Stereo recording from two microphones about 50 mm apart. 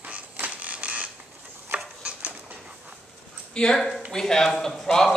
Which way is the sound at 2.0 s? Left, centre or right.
Right.